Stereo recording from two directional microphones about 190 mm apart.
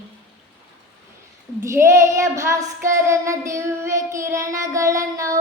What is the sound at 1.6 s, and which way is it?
Child singing, 15° right (ahead or behind).